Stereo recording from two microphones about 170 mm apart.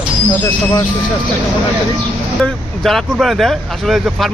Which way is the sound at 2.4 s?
Centre (ahead or behind).